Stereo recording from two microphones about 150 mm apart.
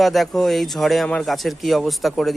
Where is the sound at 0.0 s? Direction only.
Centre (ahead or behind).